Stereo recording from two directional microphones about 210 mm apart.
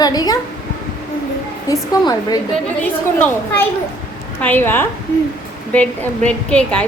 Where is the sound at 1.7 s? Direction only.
20° left (ahead or behind).